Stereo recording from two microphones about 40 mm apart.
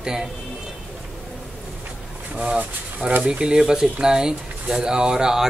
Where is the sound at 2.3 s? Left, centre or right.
Right.